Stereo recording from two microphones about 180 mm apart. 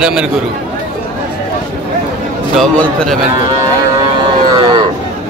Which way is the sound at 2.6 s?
5° left (ahead or behind).